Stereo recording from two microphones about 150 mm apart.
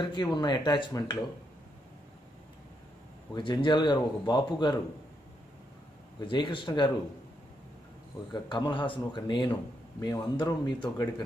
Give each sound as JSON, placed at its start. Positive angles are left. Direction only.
{"t": 0.0, "sound": "speech", "side_deg": 30}
{"t": 3.3, "sound": "a man's voice", "side_deg": 30}
{"t": 6.2, "sound": "a man's voice", "side_deg": 35}
{"t": 8.3, "sound": "a man's voice", "side_deg": 30}